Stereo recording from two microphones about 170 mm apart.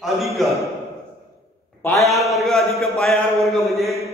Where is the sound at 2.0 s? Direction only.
Centre (ahead or behind).